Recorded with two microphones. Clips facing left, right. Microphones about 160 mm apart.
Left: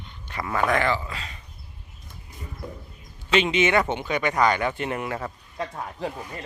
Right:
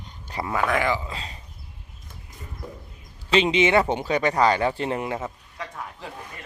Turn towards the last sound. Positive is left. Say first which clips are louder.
# left 5 dB
turn(degrees=35)  # may be behind; listen again after turning